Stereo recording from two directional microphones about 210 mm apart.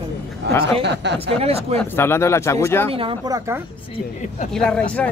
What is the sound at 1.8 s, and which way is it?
Speech, 10° left (ahead or behind).